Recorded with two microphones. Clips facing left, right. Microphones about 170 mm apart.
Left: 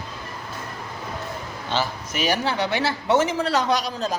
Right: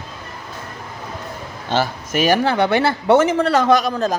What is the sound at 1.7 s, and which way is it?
Speech, 50° right (ahead or behind).